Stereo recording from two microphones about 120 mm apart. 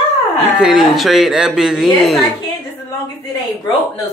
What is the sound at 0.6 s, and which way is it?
Speech, centre (ahead or behind).